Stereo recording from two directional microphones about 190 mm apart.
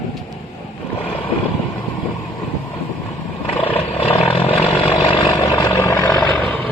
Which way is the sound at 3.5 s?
30° left (ahead or behind).